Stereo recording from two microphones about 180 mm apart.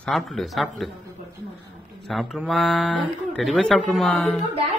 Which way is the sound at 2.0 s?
Centre (ahead or behind).